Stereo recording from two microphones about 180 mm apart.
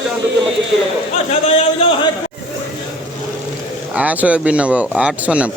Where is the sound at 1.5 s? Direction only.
30° left (ahead or behind).